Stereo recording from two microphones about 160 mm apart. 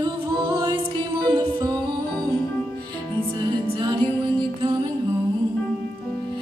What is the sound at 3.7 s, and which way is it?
Music, 30° right (ahead or behind).